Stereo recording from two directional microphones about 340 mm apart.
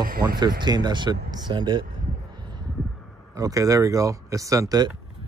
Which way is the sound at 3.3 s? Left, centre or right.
Centre.